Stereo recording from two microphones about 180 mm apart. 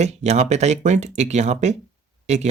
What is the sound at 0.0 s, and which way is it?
Speech, 40° right (ahead or behind).